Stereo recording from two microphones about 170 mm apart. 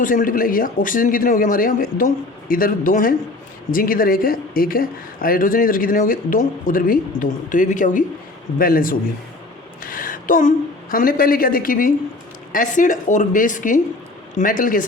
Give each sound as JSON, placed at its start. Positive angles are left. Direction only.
{"t": 0.0, "sound": "speech", "side_deg": 50}
{"t": 9.8, "sound": "a sound", "side_deg": 55}
{"t": 10.9, "sound": "speech", "side_deg": 55}